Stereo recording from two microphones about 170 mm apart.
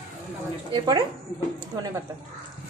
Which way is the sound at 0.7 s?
25° right (ahead or behind).